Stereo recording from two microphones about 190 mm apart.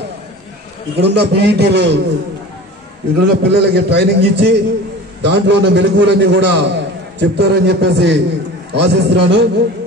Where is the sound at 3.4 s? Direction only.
65° right (ahead or behind).